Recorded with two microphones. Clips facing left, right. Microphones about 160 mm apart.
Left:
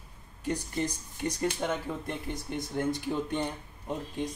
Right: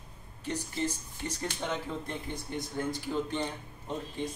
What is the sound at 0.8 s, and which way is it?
A man's voice, 10° left (ahead or behind).